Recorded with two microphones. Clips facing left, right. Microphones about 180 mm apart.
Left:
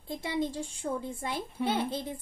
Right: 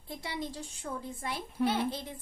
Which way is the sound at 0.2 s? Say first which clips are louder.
Left 7 dB; 25° left (ahead or behind).